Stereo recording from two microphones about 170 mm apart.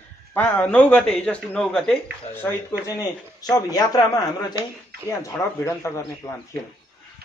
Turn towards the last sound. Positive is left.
turn(degrees=20)  # may be behind; listen again after turning